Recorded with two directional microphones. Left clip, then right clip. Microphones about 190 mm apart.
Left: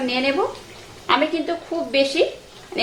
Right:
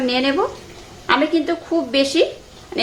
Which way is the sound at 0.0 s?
20° right (ahead or behind).